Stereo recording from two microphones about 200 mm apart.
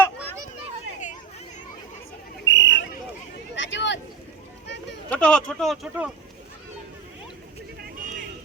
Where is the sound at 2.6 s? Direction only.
65° left (ahead or behind).